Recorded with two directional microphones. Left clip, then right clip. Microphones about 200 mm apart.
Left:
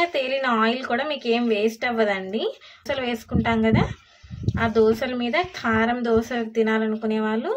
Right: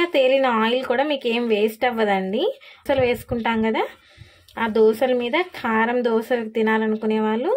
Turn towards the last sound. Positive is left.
turn(degrees=-30)  # may be behind; listen again after turning